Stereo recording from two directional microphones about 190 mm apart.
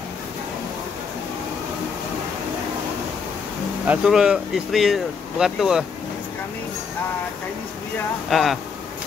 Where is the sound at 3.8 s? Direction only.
5° right (ahead or behind).